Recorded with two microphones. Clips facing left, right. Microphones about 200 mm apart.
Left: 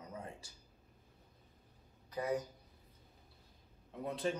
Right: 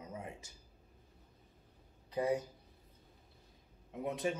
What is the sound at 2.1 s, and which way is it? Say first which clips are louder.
Speech: right 3 dB; 25° right (ahead or behind).